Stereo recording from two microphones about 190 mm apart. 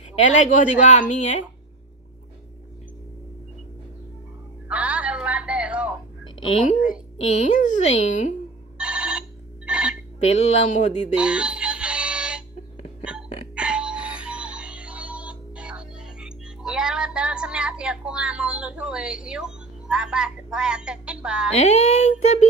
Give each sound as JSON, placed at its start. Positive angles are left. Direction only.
{"t": 0.1, "sound": "a woman's voice", "side_deg": 40}
{"t": 4.6, "sound": "music", "side_deg": -5}
{"t": 7.2, "sound": "a woman's voice", "side_deg": 35}
{"t": 8.7, "sound": "telephone bell ringing", "side_deg": -5}
{"t": 9.7, "sound": "telephone", "side_deg": -5}
{"t": 10.4, "sound": "a woman's voice", "side_deg": 35}
{"t": 11.1, "sound": "music", "side_deg": -5}
{"t": 21.5, "sound": "a woman's voice", "side_deg": 35}